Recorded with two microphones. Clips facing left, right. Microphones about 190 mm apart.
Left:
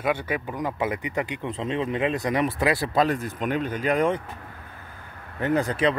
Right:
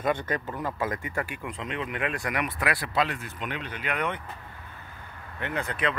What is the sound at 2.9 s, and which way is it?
Speech, 45° left (ahead or behind).